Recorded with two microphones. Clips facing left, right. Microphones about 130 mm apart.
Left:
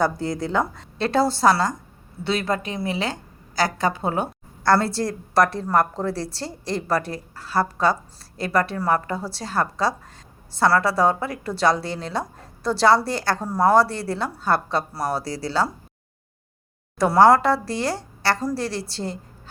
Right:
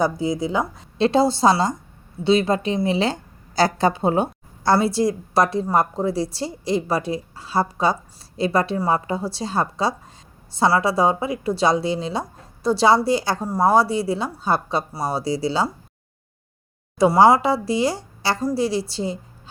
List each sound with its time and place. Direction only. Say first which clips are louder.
0.0 s a woman's voice: right 2 dB; 10° right (ahead or behind)
0.9 s a woman's voice: right 3 dB; 20° right (ahead or behind)
4.7 s a woman's voice: right 2 dB; 15° right (ahead or behind)
17.0 s a woman's voice: right 1 dB; 10° right (ahead or behind)